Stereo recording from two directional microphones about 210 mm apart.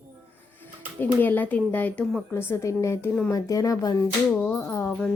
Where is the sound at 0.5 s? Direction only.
10° left (ahead or behind).